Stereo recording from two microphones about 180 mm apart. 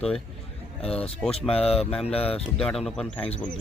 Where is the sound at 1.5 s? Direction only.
35° left (ahead or behind).